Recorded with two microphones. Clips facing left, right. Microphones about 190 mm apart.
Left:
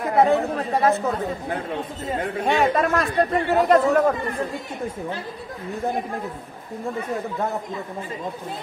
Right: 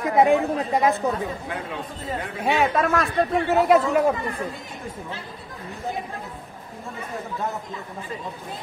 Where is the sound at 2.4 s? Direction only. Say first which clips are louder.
Left 1 dB; 5° right (ahead or behind).